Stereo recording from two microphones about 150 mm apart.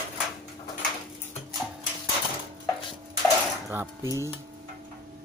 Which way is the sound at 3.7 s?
20° right (ahead or behind).